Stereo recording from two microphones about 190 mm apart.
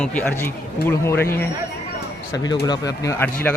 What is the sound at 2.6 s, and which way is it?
Speech, 20° left (ahead or behind).